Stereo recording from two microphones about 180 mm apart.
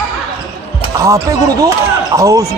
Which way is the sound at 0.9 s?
15° right (ahead or behind).